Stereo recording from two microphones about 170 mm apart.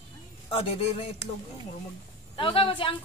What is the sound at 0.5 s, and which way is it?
Speech, 35° left (ahead or behind).